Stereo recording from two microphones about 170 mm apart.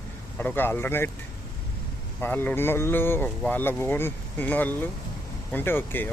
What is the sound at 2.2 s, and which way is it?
Speech, 10° left (ahead or behind).